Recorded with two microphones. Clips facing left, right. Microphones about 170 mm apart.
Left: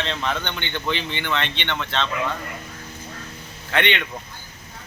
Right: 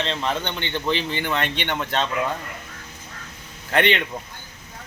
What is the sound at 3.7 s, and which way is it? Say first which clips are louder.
Speech: right 3 dB; 35° right (ahead or behind).